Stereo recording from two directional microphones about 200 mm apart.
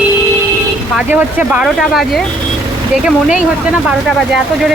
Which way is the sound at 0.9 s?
5° right (ahead or behind).